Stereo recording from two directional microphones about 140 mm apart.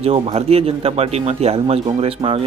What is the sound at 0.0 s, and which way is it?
Speech, 45° right (ahead or behind).